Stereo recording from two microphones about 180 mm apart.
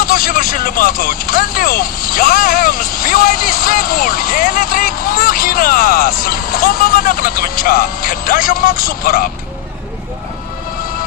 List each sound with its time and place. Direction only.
0.0 s speech: 55° left (ahead or behind)